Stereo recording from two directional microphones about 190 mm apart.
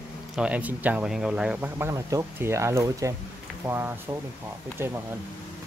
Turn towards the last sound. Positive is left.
turn(degrees=-15)  # may be behind; listen again after turning